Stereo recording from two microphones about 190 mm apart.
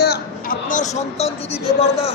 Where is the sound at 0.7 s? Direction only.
35° left (ahead or behind).